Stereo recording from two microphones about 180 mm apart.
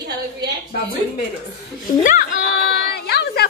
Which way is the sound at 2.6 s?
65° left (ahead or behind).